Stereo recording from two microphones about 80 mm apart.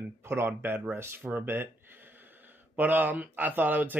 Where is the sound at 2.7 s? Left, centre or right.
Right.